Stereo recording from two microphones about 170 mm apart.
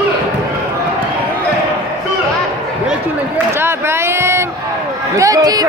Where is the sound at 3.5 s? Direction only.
15° right (ahead or behind).